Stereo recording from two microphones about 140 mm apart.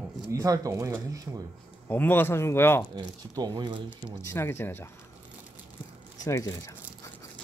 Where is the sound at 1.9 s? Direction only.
15° left (ahead or behind).